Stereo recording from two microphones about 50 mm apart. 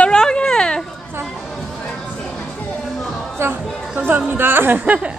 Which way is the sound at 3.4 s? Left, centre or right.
Right.